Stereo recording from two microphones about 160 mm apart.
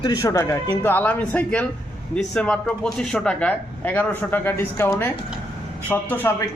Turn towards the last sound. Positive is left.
turn(degrees=10)  # may be behind; listen again after turning